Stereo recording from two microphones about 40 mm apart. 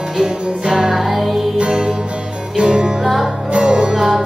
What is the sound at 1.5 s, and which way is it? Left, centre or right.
Music, right.